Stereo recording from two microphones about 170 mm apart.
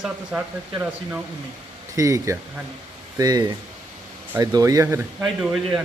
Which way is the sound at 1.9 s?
20° right (ahead or behind).